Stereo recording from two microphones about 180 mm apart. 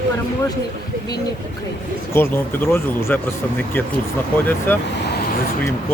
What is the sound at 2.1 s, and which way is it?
Speech, 10° left (ahead or behind).